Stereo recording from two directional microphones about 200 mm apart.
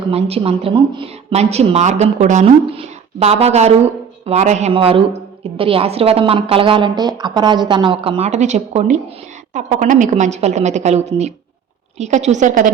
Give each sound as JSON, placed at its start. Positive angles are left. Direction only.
{"t": 0.1, "sound": "a woman's voice", "side_deg": -30}